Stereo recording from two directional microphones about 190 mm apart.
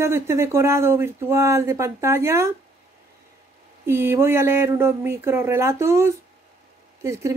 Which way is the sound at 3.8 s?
15° right (ahead or behind).